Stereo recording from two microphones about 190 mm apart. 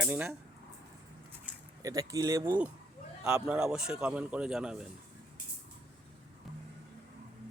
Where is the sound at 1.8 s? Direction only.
20° right (ahead or behind).